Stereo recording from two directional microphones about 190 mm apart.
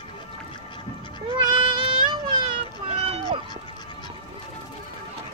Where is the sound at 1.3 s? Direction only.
25° right (ahead or behind).